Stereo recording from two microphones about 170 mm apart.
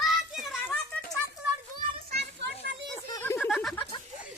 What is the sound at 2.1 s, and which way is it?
Children playing, 85° right.